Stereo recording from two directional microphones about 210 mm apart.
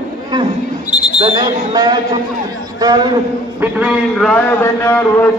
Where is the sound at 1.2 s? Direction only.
25° right (ahead or behind).